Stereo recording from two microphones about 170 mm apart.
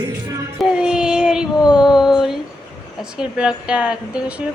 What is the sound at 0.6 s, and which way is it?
Child singing, 5° right (ahead or behind).